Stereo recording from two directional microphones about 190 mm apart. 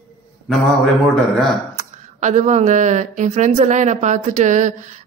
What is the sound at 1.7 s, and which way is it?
Speech, 35° right (ahead or behind).